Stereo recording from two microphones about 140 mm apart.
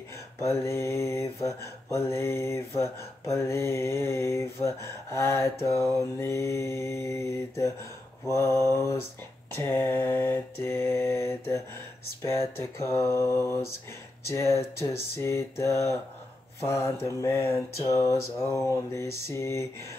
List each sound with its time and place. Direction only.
0.4 s mantra: 20° left (ahead or behind)